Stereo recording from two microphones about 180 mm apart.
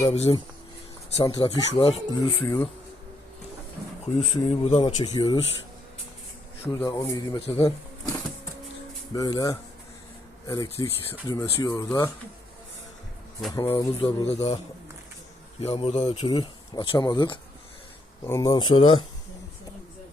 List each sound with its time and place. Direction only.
0.1 s speech: 35° left (ahead or behind)
2.4 s speech: 10° left (ahead or behind)
4.2 s speech: 40° left (ahead or behind)
4.8 s speech: 25° left (ahead or behind)
6.8 s speech: 20° left (ahead or behind)
7.3 s speech: 35° left (ahead or behind)
7.6 s a sound: 20° left (ahead or behind)
9.1 s speech: 20° left (ahead or behind)
13.7 s speech: 30° left (ahead or behind)
15.6 s speech: 35° left (ahead or behind)